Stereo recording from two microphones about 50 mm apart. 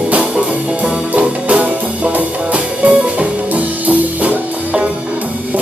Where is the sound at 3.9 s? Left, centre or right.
Right.